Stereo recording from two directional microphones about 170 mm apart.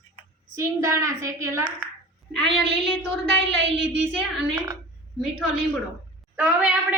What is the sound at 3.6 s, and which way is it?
Child singing, 90° right.